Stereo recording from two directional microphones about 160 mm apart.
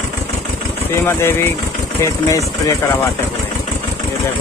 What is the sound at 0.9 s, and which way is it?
Speech, 15° left (ahead or behind).